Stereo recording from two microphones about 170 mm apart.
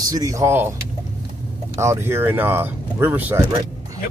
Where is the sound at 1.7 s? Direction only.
15° right (ahead or behind).